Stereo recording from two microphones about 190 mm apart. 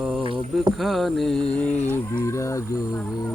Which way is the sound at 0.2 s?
25° right (ahead or behind).